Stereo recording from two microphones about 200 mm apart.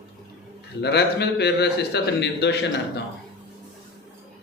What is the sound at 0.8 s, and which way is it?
A man's voice, 55° left (ahead or behind).